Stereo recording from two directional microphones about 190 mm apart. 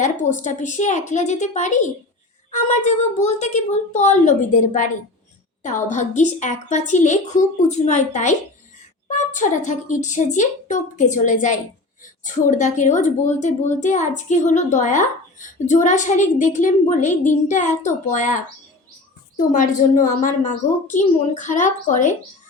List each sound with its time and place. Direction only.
0.0 s a woman's voice: 40° left (ahead or behind)
19.4 s a woman's voice: 40° left (ahead or behind)